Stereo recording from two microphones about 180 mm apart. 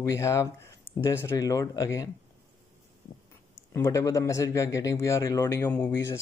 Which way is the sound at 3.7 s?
15° left (ahead or behind).